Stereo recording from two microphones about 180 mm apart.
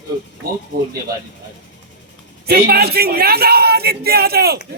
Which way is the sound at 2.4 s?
60° right (ahead or behind).